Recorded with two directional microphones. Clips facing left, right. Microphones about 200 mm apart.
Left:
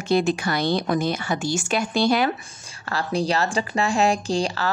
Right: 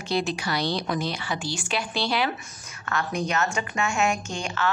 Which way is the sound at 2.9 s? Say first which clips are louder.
Left 4 dB; 30° left (ahead or behind).